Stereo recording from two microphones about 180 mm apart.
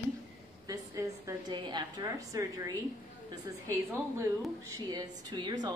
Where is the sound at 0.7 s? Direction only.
20° right (ahead or behind).